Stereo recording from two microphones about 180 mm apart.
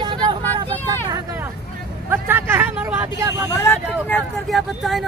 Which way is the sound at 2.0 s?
10° right (ahead or behind).